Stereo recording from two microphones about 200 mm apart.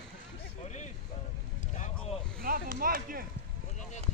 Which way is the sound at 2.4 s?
45° right (ahead or behind).